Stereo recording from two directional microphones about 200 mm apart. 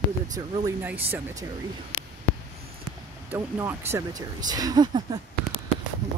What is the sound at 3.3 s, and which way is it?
Speech, 10° right (ahead or behind).